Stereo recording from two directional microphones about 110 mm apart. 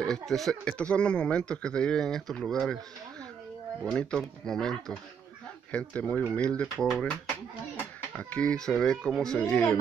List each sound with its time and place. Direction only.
0.0 s speech: 5° left (ahead or behind)
3.8 s speech: 5° left (ahead or behind)
8.2 s speech: 10° left (ahead or behind)